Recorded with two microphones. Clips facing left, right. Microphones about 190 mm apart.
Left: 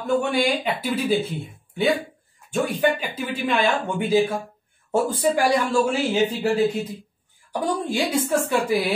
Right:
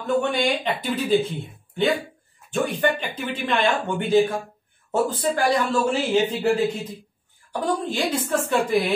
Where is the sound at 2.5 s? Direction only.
10° left (ahead or behind).